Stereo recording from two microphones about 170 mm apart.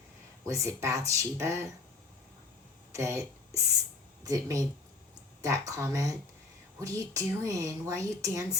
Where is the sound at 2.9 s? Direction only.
15° right (ahead or behind).